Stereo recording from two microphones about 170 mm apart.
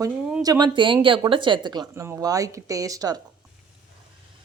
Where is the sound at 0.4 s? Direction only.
25° right (ahead or behind).